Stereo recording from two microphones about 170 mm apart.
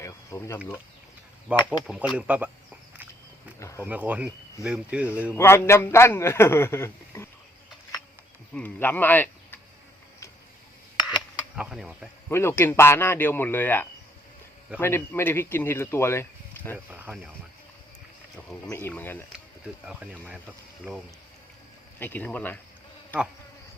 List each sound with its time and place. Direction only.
0.0 s a sound: 15° left (ahead or behind)
1.5 s speech: 10° right (ahead or behind)
3.6 s a man's voice: 15° left (ahead or behind)
3.8 s speech: 10° right (ahead or behind)
5.4 s a man's voice: 15° left (ahead or behind)
8.5 s speech: 10° left (ahead or behind)
11.5 s insect: 5° right (ahead or behind)
12.3 s a man's voice: 15° left (ahead or behind)
16.7 s speech: 10° right (ahead or behind)
18.3 s a man's voice: 10° left (ahead or behind)
19.8 s speech: 5° right (ahead or behind)
21.9 s a man's voice: 10° left (ahead or behind)